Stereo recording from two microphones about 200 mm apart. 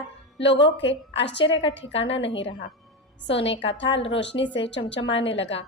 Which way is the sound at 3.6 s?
65° left (ahead or behind).